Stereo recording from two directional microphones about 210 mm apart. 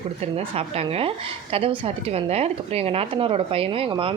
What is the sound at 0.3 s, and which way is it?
A woman's voice, 30° right (ahead or behind).